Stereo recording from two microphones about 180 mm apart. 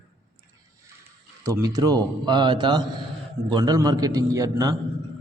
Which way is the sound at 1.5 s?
20° right (ahead or behind).